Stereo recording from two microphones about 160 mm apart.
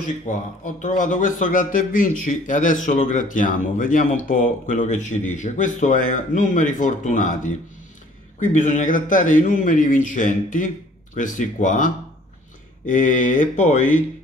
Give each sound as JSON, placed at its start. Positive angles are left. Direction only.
{"t": 0.3, "sound": "speech", "side_deg": 55}